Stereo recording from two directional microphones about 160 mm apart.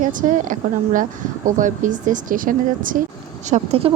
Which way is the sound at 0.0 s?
55° right (ahead or behind).